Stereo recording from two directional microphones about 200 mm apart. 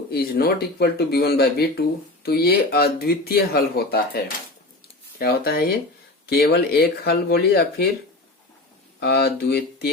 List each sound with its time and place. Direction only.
0.1 s speech: 50° left (ahead or behind)
5.2 s speech: 50° left (ahead or behind)
9.0 s speech: 55° left (ahead or behind)